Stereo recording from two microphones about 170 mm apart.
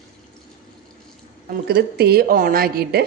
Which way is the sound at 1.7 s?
65° right (ahead or behind).